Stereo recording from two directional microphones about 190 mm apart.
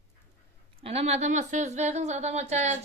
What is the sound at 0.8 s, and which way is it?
A woman's voice, 35° right (ahead or behind).